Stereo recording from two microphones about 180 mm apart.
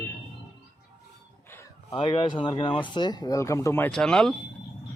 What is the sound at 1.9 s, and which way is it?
Speech, 30° left (ahead or behind).